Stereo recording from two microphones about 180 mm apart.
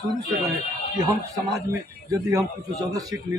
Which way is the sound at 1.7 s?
15° right (ahead or behind).